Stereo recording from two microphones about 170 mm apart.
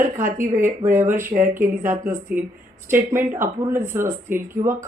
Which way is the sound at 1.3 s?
50° right (ahead or behind).